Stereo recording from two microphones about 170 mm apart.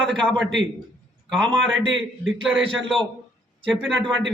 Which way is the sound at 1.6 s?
90° right.